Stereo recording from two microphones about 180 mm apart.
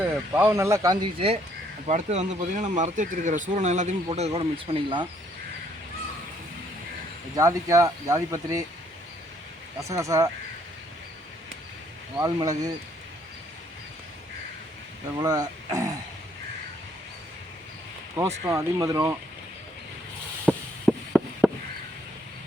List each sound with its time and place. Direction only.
0.0 s speech: 10° right (ahead or behind)
1.9 s speech: 40° right (ahead or behind)
7.3 s speech: 20° right (ahead or behind)
9.8 s speech: 15° right (ahead or behind)
12.1 s speech: 20° right (ahead or behind)
15.2 s speech: 20° right (ahead or behind)
18.4 s speech: 20° right (ahead or behind)
20.4 s a sound: 5° left (ahead or behind)
21.4 s chop: 10° right (ahead or behind)